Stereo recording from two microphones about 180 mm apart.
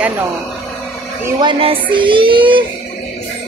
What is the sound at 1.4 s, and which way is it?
Music, 30° right (ahead or behind).